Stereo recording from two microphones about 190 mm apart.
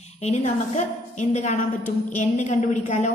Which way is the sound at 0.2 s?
35° left (ahead or behind).